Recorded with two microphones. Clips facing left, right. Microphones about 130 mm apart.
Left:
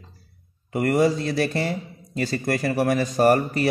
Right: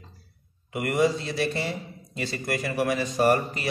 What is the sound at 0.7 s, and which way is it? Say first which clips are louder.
Speech: left 4 dB; 40° left (ahead or behind).